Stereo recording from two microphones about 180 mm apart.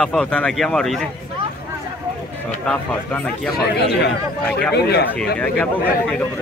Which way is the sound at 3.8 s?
65° left (ahead or behind).